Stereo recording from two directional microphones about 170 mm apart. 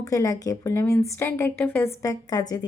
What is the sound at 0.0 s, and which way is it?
A woman's voice, 20° left (ahead or behind).